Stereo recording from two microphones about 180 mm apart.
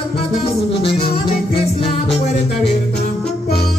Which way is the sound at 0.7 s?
30° left (ahead or behind).